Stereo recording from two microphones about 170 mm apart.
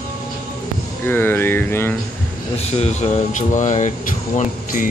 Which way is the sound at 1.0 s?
10° left (ahead or behind).